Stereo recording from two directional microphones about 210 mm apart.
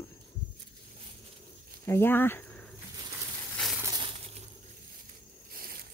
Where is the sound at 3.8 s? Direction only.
20° right (ahead or behind).